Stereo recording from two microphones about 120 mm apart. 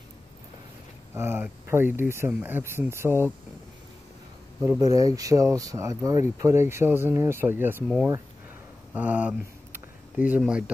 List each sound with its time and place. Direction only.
1.1 s speech: 20° right (ahead or behind)
4.7 s speech: 30° right (ahead or behind)
8.9 s a sound: 10° right (ahead or behind)